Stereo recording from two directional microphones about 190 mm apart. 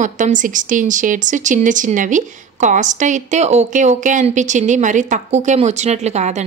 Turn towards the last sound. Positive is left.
turn(degrees=-35)  # may be behind; listen again after turning